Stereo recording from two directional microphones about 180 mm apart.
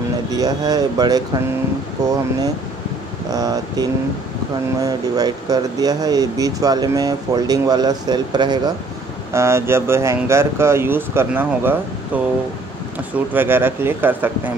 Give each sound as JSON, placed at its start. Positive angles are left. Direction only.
{"t": 0.3, "sound": "speech", "side_deg": -20}
{"t": 3.3, "sound": "speech", "side_deg": -20}